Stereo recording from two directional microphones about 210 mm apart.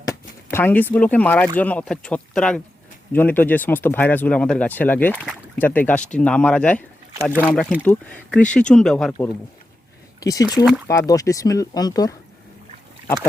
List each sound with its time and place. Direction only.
0.0 s speech: 15° left (ahead or behind)
5.1 s speech: 5° right (ahead or behind)
5.5 s speech: 10° left (ahead or behind)
10.2 s speech: 15° left (ahead or behind)